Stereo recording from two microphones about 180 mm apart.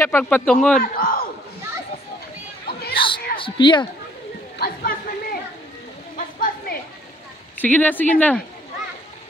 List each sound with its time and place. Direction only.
0.0 s speech: 10° left (ahead or behind)
0.7 s a man's voice: 50° left (ahead or behind)
2.9 s a sound: 30° left (ahead or behind)
3.3 s a woman's voice: 25° left (ahead or behind)
4.6 s speech: 55° left (ahead or behind)
6.1 s a sound: 50° left (ahead or behind)
7.5 s speech: 10° left (ahead or behind)